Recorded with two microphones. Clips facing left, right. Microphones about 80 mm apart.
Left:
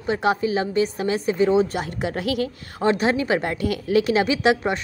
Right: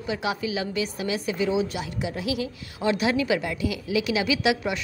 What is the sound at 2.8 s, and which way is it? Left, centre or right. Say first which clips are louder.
A woman's voice: left 3 dB; left.